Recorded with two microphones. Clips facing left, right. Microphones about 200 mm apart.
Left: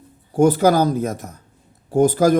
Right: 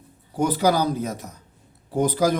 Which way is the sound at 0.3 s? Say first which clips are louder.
Left 6 dB; 50° left (ahead or behind).